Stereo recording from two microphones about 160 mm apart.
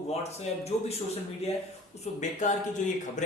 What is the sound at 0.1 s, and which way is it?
Speech, 40° left (ahead or behind).